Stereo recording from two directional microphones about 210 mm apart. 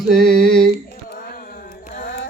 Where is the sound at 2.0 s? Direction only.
55° left (ahead or behind).